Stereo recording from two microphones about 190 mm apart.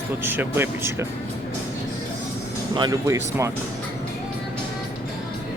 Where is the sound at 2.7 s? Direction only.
20° right (ahead or behind).